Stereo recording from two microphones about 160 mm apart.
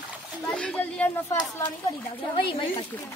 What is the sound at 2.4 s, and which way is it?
Speech, 30° left (ahead or behind).